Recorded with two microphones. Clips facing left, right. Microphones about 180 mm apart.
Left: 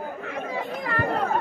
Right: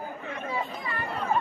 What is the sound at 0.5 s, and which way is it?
Chatter, 90° left.